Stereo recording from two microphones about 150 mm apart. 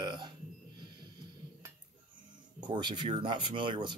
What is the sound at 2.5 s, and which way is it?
Speech, 30° right (ahead or behind).